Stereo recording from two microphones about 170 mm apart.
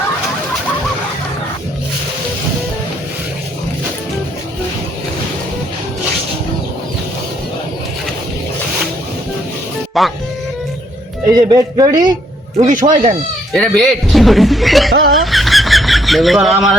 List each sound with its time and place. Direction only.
10.0 s speech: centre (ahead or behind)
11.3 s speech: 20° right (ahead or behind)
12.5 s speech: 50° right (ahead or behind)
13.5 s speech: 5° left (ahead or behind)
15.2 s a sound: centre (ahead or behind)